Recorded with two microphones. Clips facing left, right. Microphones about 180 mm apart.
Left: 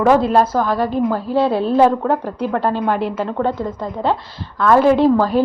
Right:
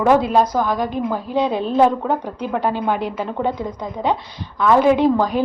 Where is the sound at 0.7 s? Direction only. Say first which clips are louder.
Left 3 dB; 15° right (ahead or behind).